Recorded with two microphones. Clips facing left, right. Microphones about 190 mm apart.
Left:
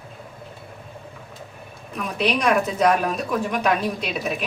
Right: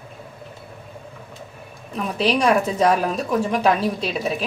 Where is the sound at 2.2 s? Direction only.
35° right (ahead or behind).